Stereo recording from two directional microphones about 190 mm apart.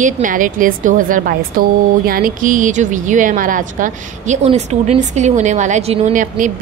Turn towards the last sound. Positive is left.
turn(degrees=-40)  # may be behind; listen again after turning